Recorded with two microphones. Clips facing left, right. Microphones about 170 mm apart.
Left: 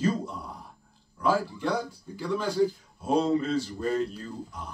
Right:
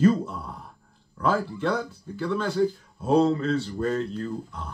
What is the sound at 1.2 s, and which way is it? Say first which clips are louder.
Speech: right 1 dB; 60° right (ahead or behind).